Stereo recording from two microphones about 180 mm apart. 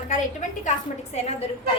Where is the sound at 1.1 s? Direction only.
35° left (ahead or behind).